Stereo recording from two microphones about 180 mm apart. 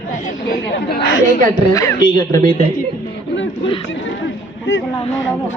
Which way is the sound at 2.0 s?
50° right (ahead or behind).